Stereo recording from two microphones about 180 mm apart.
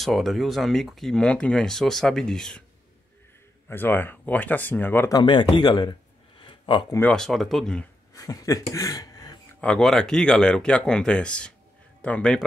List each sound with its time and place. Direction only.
0.0 s speech: centre (ahead or behind)
3.6 s speech: 10° left (ahead or behind)
5.2 s speech: 25° left (ahead or behind)
6.4 s a sound: 30° left (ahead or behind)
7.0 s speech: 5° left (ahead or behind)
8.1 s a sound: 20° left (ahead or behind)
9.6 s speech: 5° left (ahead or behind)